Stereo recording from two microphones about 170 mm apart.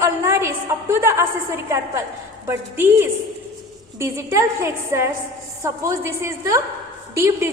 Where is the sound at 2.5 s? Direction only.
15° right (ahead or behind).